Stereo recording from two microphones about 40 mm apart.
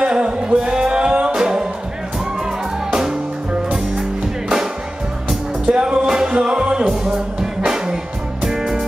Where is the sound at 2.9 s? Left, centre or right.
Centre.